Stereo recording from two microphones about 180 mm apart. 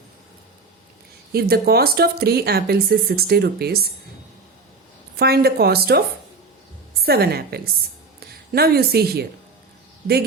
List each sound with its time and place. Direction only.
1.3 s speech: 60° right (ahead or behind)
5.1 s speech: 60° right (ahead or behind)
7.0 s speech: 60° right (ahead or behind)